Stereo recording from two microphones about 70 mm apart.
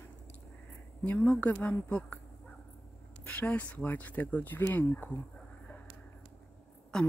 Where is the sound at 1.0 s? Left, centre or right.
Centre.